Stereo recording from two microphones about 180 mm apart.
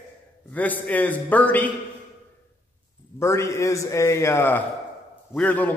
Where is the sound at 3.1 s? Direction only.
15° left (ahead or behind).